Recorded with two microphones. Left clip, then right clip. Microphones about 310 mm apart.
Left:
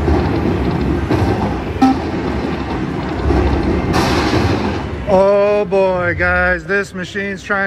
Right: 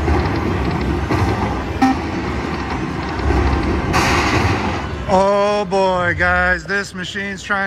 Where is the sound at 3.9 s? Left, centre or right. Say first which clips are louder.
Right 1 dB; centre.